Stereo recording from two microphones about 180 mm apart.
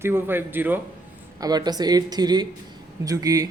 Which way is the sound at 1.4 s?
20° right (ahead or behind).